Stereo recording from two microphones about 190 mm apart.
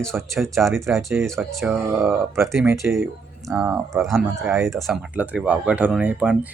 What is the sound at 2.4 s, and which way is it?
Speech, centre (ahead or behind).